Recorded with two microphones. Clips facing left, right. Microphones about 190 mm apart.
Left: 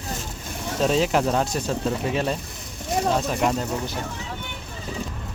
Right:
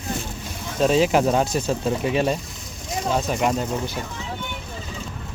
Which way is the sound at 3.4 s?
5° right (ahead or behind).